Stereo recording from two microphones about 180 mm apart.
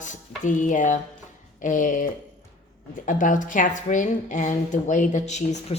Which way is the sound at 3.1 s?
45° left (ahead or behind).